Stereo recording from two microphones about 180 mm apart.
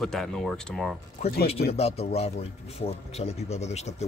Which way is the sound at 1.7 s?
35° left (ahead or behind).